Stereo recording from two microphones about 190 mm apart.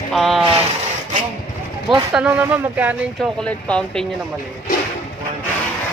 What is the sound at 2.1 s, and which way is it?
Speech, 5° right (ahead or behind).